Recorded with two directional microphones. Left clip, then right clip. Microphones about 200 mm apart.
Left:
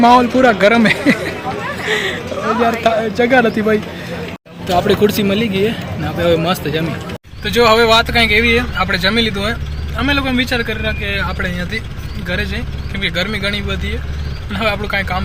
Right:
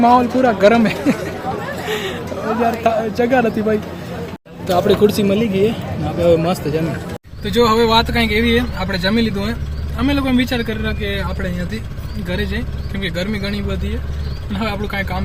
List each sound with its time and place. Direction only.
0.0 s speech: 5° left (ahead or behind)
4.6 s speech: 5° right (ahead or behind)
13.0 s speech: 10° right (ahead or behind)